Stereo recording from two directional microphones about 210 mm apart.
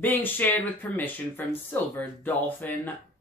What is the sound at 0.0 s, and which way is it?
Speech, 10° left (ahead or behind).